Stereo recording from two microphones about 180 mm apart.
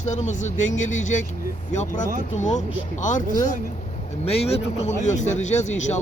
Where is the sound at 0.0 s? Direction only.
40° left (ahead or behind).